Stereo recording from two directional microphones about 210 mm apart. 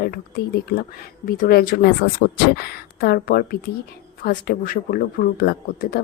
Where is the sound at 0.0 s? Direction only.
45° left (ahead or behind).